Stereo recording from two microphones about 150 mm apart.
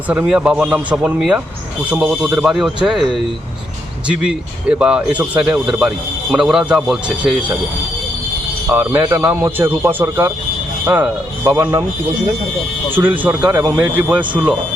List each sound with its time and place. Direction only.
0.1 s a man's voice: 10° right (ahead or behind)
4.1 s a man's voice: 5° right (ahead or behind)
8.7 s a man's voice: 15° right (ahead or behind)
12.9 s a man's voice: 15° right (ahead or behind)